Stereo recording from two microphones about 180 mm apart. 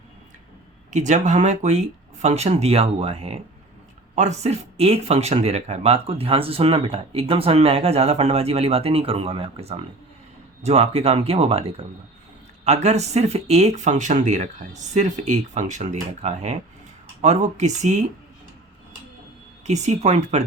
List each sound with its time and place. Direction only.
0.9 s speech: 40° right (ahead or behind)
19.6 s speech: 40° right (ahead or behind)